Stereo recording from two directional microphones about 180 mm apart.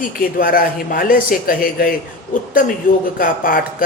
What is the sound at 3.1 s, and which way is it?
Speech, 50° left (ahead or behind).